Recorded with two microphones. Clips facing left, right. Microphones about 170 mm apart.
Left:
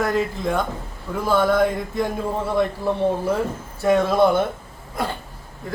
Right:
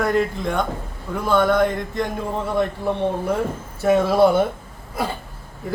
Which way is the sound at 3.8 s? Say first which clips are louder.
Right 1 dB; 5° right (ahead or behind).